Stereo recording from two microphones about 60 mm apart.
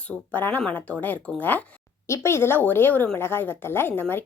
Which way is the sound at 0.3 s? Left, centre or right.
Left.